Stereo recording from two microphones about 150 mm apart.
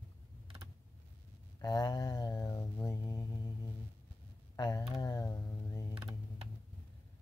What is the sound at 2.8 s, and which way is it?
Music, 20° left (ahead or behind).